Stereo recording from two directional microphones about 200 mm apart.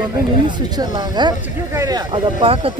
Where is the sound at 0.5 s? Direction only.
20° right (ahead or behind).